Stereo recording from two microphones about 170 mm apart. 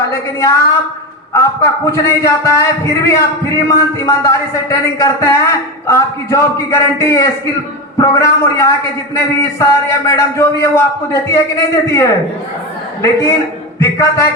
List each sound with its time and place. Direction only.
0.1 s a woman's voice: 15° left (ahead or behind)